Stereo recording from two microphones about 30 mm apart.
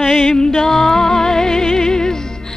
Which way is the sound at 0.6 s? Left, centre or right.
Centre.